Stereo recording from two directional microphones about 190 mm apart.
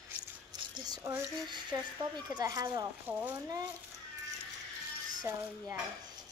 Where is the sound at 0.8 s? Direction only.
20° right (ahead or behind).